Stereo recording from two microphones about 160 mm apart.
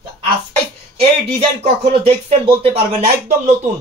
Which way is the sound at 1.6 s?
40° right (ahead or behind).